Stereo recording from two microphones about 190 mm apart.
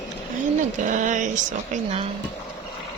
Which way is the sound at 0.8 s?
40° right (ahead or behind).